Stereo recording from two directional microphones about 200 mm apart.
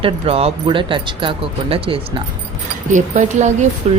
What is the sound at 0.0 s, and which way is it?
Speech, 30° right (ahead or behind).